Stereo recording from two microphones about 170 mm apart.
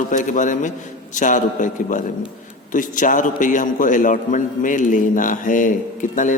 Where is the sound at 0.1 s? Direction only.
50° left (ahead or behind).